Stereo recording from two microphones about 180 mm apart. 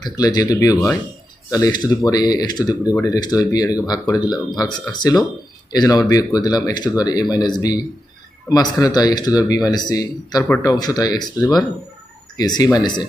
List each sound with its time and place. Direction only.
0.0 s speech: 20° left (ahead or behind)